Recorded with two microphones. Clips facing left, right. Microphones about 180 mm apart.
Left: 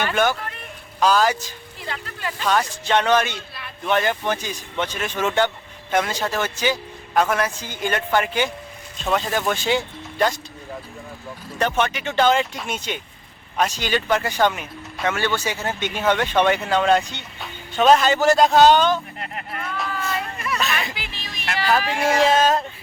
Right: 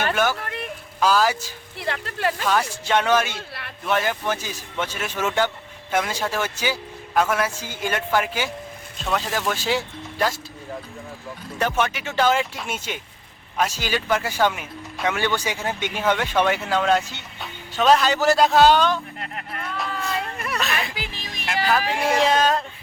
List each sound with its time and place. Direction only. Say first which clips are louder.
0.1 s a man's voice: left 1 dB; 5° right (ahead or behind)
1.8 s speech: right 6 dB; 75° right (ahead or behind)
2.5 s a man's voice: left 4 dB; 10° right (ahead or behind)
11.6 s a man's voice: left 2 dB; 5° right (ahead or behind)
20.9 s music: right 2 dB; 40° right (ahead or behind)
21.7 s speech: left 2 dB; centre (ahead or behind)